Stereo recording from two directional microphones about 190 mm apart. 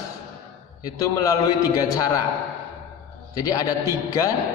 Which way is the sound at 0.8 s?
20° left (ahead or behind).